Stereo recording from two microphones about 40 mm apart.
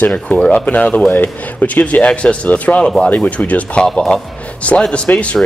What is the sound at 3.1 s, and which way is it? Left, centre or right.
Speech, left.